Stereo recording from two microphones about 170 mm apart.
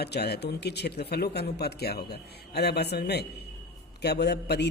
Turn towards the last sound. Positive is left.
turn(degrees=80)